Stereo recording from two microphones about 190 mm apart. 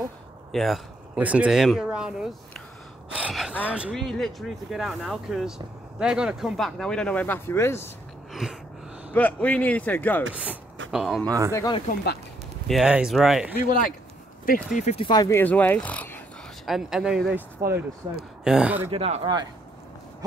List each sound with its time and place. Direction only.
0.5 s speech: centre (ahead or behind)
3.1 s gasp: 5° right (ahead or behind)
3.6 s speech: 5° right (ahead or behind); by 7.9 s 15° left (ahead or behind)
8.3 s a sound: centre (ahead or behind)
9.1 s speech: 10° left (ahead or behind)
10.3 s speech: 10° right (ahead or behind)
11.2 s speech: 20° right (ahead or behind)
11.5 s speech: 20° left (ahead or behind)
12.6 s speech: 5° right (ahead or behind)
13.7 s speech: 45° left (ahead or behind)
14.8 s speech: 30° left (ahead or behind); by 16.2 s 10° left (ahead or behind)
16.6 s speech: centre (ahead or behind)
18.9 s speech: 30° right (ahead or behind)